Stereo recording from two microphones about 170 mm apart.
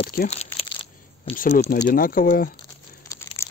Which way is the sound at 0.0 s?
60° left (ahead or behind).